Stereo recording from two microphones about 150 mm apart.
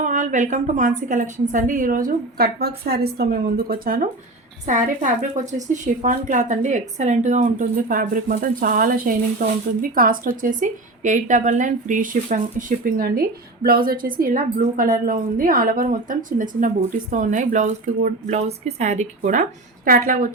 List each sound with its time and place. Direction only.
0.0 s a woman's voice: 55° right (ahead or behind)
4.6 s a woman's voice: 55° right (ahead or behind)